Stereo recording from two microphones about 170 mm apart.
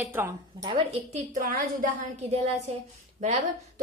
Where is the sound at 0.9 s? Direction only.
50° right (ahead or behind).